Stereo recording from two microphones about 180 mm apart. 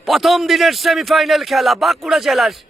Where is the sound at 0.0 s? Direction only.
Centre (ahead or behind).